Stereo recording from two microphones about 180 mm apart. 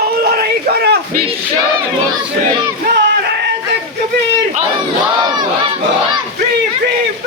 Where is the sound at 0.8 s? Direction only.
65° right (ahead or behind).